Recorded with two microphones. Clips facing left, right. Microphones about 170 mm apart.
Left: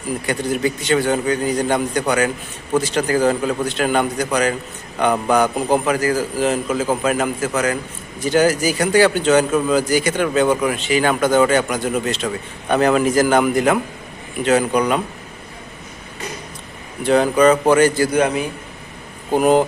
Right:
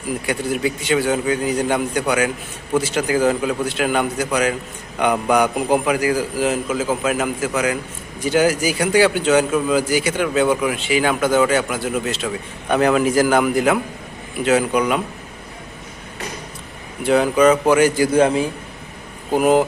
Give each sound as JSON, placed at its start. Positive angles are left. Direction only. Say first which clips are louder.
{"t": 0.3, "sound": "a man's voice", "louder": "left 1 dB", "side_deg": -5}
{"t": 17.0, "sound": "a man's voice", "louder": "left 1 dB", "side_deg": -5}
{"t": 18.1, "sound": "a man's voice", "louder": "right 2 dB", "side_deg": -30}
{"t": 19.3, "sound": "a man's voice", "louder": "left 1 dB", "side_deg": -5}